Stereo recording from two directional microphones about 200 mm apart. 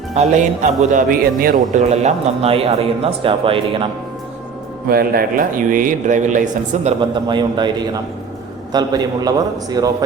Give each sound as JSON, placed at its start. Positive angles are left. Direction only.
{"t": 0.1, "sound": "speech", "side_deg": -35}
{"t": 4.9, "sound": "speech", "side_deg": -50}
{"t": 7.0, "sound": "a man's voice", "side_deg": -20}